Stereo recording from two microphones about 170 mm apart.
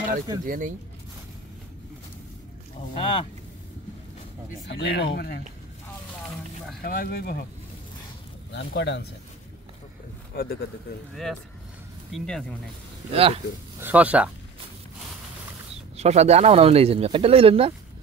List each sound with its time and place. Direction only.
0.5 s speech: 55° right (ahead or behind)
2.9 s speech: 30° left (ahead or behind)
4.6 s speech: 80° left
6.8 s speech: 60° left (ahead or behind)
8.5 s speech: 90° left
10.3 s speech: 60° left (ahead or behind)
12.1 s speech: 5° left (ahead or behind)
13.1 s speech: 35° right (ahead or behind)
13.7 s speech: 10° right (ahead or behind)
16.0 s speech: 40° right (ahead or behind)